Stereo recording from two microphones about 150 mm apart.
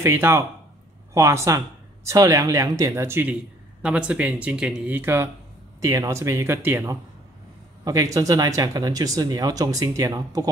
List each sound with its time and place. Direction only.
0.0 s speech: 15° right (ahead or behind)